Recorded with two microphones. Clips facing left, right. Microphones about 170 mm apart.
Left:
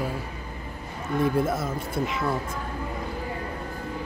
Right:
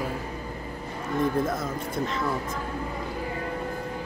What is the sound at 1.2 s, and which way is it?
Speech, 5° left (ahead or behind).